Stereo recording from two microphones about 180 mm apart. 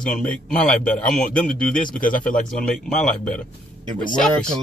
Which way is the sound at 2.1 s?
50° left (ahead or behind).